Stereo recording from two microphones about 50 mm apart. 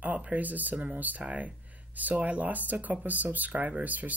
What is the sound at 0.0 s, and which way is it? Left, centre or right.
Speech, right.